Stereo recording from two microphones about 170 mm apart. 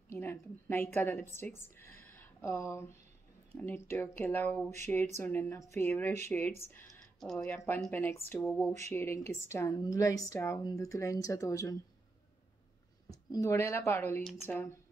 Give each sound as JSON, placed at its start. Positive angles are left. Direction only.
{"t": 0.1, "sound": "a woman's voice", "side_deg": 15}
{"t": 13.1, "sound": "speech", "side_deg": 20}